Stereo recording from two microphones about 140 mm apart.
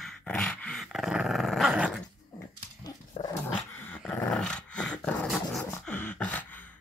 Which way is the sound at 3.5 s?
15° left (ahead or behind).